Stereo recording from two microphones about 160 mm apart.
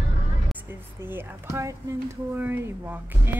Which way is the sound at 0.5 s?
15° right (ahead or behind).